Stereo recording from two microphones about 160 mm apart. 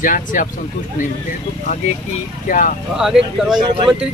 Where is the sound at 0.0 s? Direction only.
55° left (ahead or behind).